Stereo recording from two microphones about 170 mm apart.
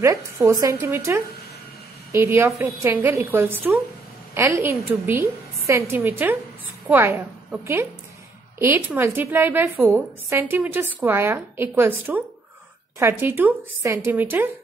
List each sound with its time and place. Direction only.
0.0 s a woman's voice: 15° right (ahead or behind)